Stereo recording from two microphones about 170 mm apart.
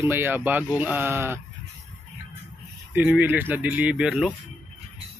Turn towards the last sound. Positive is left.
turn(degrees=-5)  # may be behind; listen again after turning